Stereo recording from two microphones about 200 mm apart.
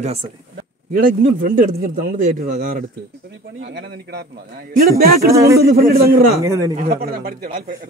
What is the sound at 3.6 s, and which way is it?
Speech, 55° right (ahead or behind).